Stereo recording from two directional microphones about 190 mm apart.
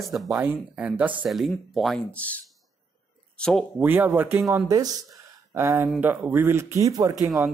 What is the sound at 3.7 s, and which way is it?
Speech, 10° right (ahead or behind).